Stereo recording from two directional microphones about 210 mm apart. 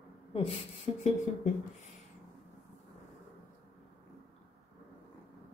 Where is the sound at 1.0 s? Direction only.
35° left (ahead or behind).